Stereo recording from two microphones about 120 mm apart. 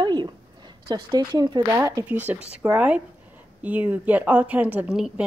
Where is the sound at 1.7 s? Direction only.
25° right (ahead or behind).